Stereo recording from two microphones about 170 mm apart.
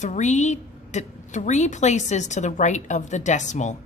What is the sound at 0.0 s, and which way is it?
A woman's voice, 45° left (ahead or behind).